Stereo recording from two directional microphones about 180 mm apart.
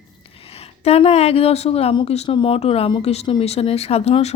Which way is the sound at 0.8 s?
35° left (ahead or behind).